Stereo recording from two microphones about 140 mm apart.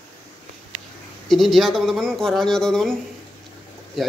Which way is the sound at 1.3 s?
Centre (ahead or behind).